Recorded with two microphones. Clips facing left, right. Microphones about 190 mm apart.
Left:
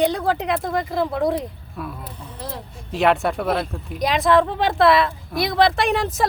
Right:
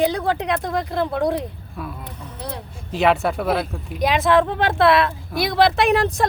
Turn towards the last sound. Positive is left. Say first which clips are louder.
# right 3 dB
turn(degrees=0)  # may be behind; listen again after turning